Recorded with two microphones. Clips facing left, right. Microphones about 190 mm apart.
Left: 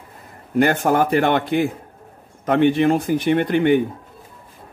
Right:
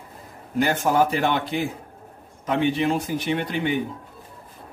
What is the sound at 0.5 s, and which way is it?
A man's voice, 60° left (ahead or behind).